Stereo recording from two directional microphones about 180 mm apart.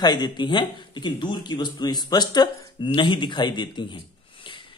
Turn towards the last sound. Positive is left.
turn(degrees=25)  # may be behind; listen again after turning